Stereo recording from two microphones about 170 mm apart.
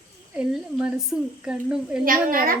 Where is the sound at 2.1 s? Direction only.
55° right (ahead or behind).